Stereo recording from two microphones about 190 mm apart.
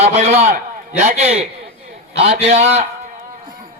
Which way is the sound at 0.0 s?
35° right (ahead or behind).